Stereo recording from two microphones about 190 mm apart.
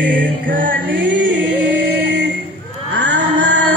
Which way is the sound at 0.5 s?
45° right (ahead or behind).